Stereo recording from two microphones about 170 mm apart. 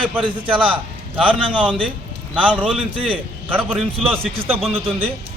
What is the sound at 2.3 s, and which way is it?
Speech, 10° right (ahead or behind).